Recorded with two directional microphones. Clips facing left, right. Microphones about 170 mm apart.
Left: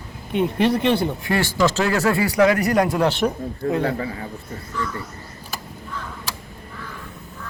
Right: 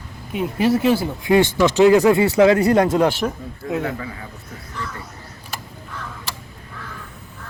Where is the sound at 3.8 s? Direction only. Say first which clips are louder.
Left 3 dB; 35° left (ahead or behind).